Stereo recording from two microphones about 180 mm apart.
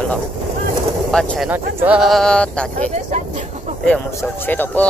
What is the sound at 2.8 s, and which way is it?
Speech, 40° right (ahead or behind).